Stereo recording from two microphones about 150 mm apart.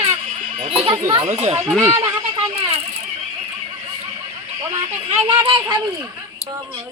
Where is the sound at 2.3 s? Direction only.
35° right (ahead or behind).